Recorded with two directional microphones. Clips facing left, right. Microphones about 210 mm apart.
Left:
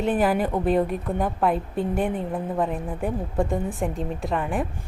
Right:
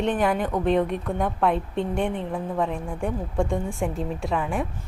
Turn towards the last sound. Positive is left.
turn(degrees=0)  # may be behind; listen again after turning